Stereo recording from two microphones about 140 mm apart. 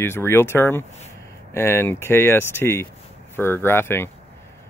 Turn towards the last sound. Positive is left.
turn(degrees=15)  # may be behind; listen again after turning